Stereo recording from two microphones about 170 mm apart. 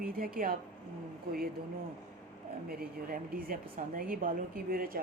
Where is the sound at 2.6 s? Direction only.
65° right (ahead or behind).